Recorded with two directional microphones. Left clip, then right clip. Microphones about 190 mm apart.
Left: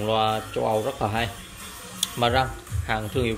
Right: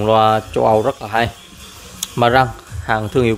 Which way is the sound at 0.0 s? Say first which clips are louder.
Right 10 dB; 45° right (ahead or behind).